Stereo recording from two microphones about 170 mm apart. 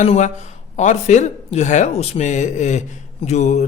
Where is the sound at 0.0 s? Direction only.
45° left (ahead or behind).